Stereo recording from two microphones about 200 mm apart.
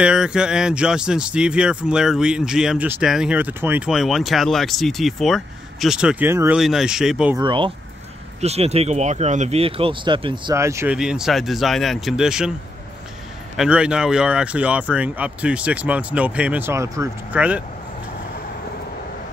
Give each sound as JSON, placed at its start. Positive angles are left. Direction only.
{"t": 0.0, "sound": "speech", "side_deg": -5}
{"t": 7.3, "sound": "speech", "side_deg": -25}
{"t": 11.0, "sound": "speech", "side_deg": -5}
{"t": 13.6, "sound": "speech", "side_deg": -5}